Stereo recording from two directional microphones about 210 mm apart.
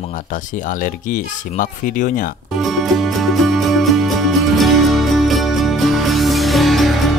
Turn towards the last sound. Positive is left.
turn(degrees=0)  # may be behind; listen again after turning